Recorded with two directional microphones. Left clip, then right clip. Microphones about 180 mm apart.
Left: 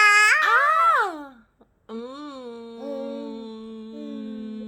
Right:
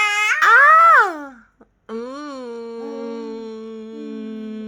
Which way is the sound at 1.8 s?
35° right (ahead or behind).